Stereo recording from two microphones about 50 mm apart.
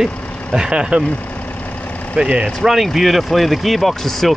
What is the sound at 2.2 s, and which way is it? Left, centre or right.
Speech, centre.